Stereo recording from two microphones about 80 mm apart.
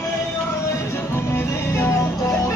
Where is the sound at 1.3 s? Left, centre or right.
Left.